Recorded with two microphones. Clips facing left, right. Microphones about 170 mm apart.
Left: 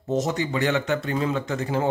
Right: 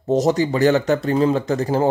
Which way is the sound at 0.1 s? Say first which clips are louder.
Right 7 dB; 35° right (ahead or behind).